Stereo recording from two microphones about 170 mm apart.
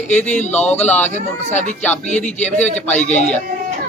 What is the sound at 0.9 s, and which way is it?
Speech, 45° left (ahead or behind).